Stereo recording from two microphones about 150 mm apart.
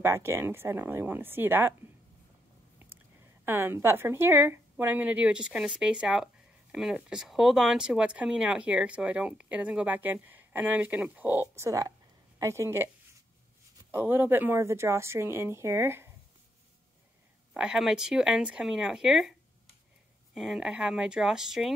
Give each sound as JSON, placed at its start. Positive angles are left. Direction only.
{"t": 0.0, "sound": "speech", "side_deg": -15}
{"t": 3.4, "sound": "speech", "side_deg": -15}
{"t": 13.9, "sound": "speech", "side_deg": -15}
{"t": 17.6, "sound": "speech", "side_deg": -5}
{"t": 20.3, "sound": "speech", "side_deg": 0}